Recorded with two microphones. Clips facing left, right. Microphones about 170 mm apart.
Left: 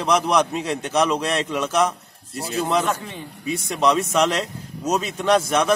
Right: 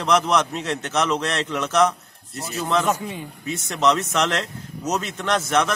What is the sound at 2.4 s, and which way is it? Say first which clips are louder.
Speech: left 4 dB; 30° left (ahead or behind).